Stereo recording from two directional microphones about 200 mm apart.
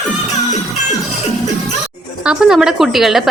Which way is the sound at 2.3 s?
5° right (ahead or behind).